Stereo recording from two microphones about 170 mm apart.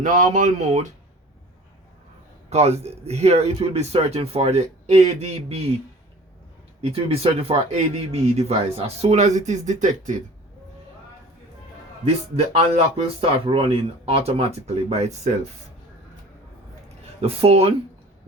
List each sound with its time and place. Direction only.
0.0 s speech: 50° right (ahead or behind)
2.5 s speech: 40° right (ahead or behind)
6.8 s speech: 35° right (ahead or behind)
12.5 s speech: 35° right (ahead or behind)
17.2 s speech: 35° right (ahead or behind)